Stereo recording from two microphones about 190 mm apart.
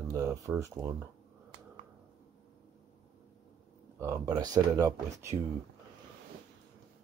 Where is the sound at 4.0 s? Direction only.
15° right (ahead or behind).